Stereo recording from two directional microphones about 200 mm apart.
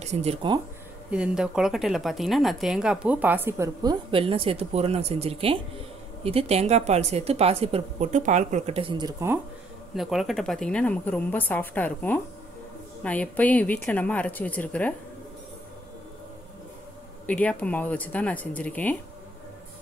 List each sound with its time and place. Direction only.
0.0 s a woman's voice: 30° right (ahead or behind)
1.1 s a woman's voice: 5° right (ahead or behind)
9.9 s speech: centre (ahead or behind)
17.3 s speech: 5° left (ahead or behind)